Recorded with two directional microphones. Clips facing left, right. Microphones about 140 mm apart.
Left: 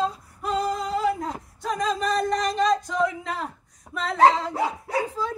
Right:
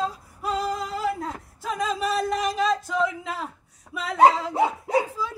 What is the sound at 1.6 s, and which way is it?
A man's voice, 5° right (ahead or behind).